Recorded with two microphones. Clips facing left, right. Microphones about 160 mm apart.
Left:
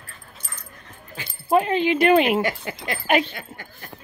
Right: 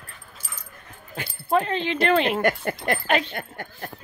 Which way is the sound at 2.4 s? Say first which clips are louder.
Right 2 dB; 55° right (ahead or behind).